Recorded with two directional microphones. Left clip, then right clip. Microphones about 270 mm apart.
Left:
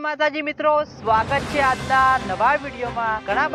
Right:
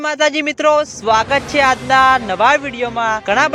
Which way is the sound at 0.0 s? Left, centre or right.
Right.